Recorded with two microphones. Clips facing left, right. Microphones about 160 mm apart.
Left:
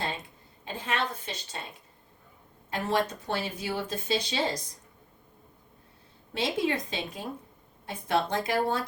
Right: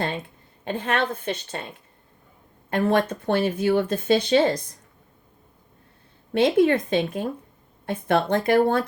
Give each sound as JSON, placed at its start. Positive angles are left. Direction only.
{"t": 0.6, "sound": "speech", "side_deg": -60}
{"t": 2.6, "sound": "speech", "side_deg": -60}
{"t": 6.3, "sound": "speech", "side_deg": -55}